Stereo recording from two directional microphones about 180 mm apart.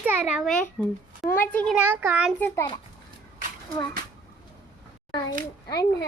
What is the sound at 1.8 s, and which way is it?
Speech, 10° right (ahead or behind).